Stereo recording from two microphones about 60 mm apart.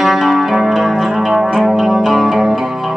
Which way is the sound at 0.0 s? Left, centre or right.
Centre.